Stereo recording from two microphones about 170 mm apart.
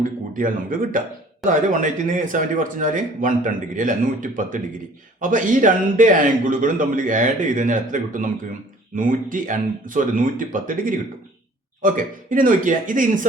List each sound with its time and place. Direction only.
0.0 s speech: 55° right (ahead or behind)